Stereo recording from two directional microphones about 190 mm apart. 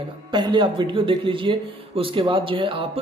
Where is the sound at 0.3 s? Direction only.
25° right (ahead or behind).